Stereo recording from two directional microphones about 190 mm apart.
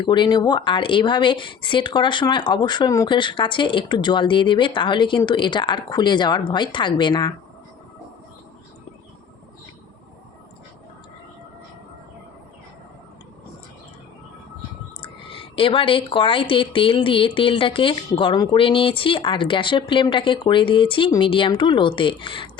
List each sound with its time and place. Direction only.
0.0 s speech: 25° left (ahead or behind)
15.0 s speech: 30° left (ahead or behind)